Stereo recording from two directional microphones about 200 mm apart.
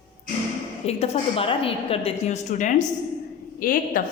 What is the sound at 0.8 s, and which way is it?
A woman's voice, 30° left (ahead or behind).